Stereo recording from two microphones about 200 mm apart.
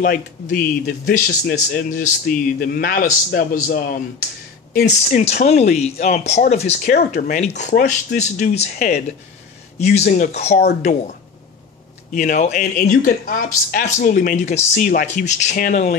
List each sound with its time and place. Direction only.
0.0 s speech: 45° left (ahead or behind)
4.8 s speech: 35° left (ahead or behind)